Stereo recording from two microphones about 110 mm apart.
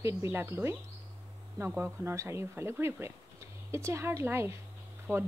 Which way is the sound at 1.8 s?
25° right (ahead or behind).